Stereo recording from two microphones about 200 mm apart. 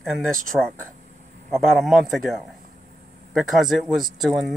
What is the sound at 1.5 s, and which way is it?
Speech, centre (ahead or behind).